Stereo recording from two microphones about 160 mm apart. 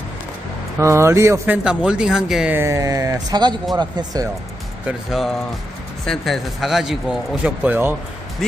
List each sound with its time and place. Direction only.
0.8 s speech: 15° right (ahead or behind)
1.6 s speech: 5° right (ahead or behind); by 4.3 s 25° right (ahead or behind)
4.9 s speech: centre (ahead or behind)
8.4 s speech: centre (ahead or behind)